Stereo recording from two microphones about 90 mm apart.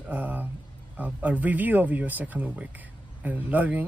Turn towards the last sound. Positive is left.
turn(degrees=-15)  # may be behind; listen again after turning